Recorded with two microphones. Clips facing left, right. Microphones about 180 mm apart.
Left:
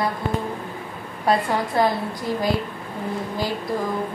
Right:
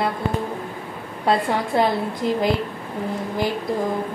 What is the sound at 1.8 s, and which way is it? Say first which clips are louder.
Speech: right 1 dB; 25° right (ahead or behind).